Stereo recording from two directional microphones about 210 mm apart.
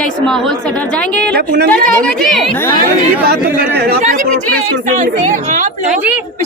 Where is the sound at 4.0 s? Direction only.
40° right (ahead or behind).